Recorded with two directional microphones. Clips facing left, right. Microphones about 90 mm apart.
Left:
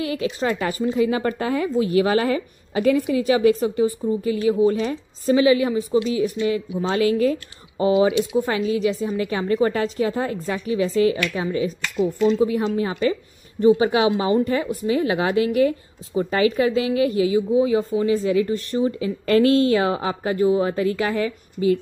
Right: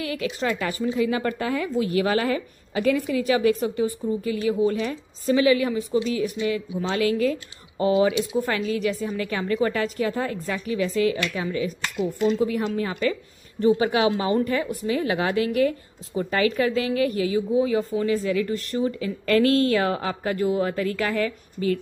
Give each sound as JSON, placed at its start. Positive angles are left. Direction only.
{"t": 0.0, "sound": "a woman's voice", "side_deg": 25}
{"t": 7.8, "sound": "a woman's voice", "side_deg": 20}